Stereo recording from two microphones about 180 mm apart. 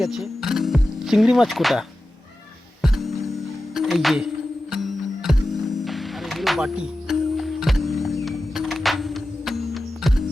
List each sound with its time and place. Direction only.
0.0 s speech: centre (ahead or behind)
2.8 s music: centre (ahead or behind)
3.8 s speech: centre (ahead or behind)
4.7 s music: centre (ahead or behind)